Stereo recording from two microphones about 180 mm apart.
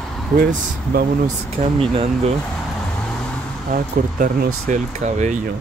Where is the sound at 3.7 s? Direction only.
50° right (ahead or behind).